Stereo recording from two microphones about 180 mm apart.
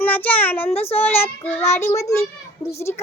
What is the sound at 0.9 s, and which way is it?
A child's voice, 10° left (ahead or behind).